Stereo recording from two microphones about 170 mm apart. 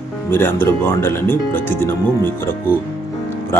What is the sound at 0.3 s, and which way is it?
Speech, 10° left (ahead or behind).